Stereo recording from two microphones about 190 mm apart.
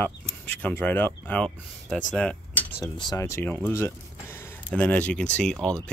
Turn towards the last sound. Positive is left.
turn(degrees=5)  # may be behind; listen again after turning